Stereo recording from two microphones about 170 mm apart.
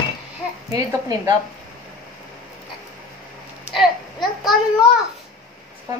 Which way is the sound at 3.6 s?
Centre (ahead or behind).